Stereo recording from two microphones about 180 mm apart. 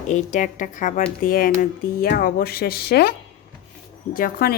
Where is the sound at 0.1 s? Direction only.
45° left (ahead or behind).